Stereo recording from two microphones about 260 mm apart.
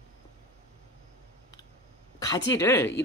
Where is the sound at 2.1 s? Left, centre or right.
Centre.